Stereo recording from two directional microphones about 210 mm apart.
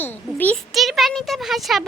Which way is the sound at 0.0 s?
10° left (ahead or behind).